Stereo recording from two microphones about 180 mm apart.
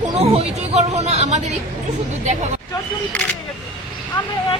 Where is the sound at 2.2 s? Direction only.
40° right (ahead or behind).